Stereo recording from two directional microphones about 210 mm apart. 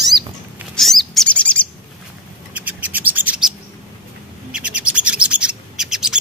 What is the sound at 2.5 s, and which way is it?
Bird, 10° right (ahead or behind).